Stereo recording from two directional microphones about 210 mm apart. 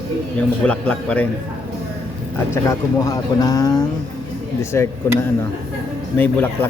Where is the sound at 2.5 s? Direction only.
15° left (ahead or behind).